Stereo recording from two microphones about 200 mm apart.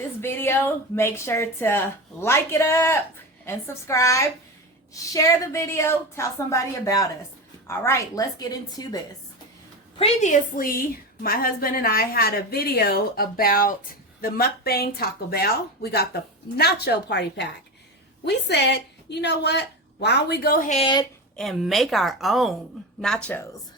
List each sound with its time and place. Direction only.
0.2 s a woman's voice: 10° left (ahead or behind)
10.0 s a woman's voice: 35° left (ahead or behind)
21.3 s a woman's voice: centre (ahead or behind)